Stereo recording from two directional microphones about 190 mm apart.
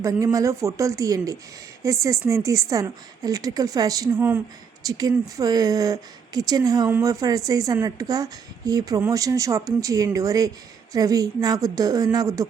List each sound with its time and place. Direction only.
0.0 s speech: 15° right (ahead or behind)